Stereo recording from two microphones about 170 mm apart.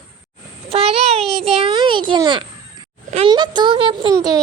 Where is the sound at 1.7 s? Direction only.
30° right (ahead or behind).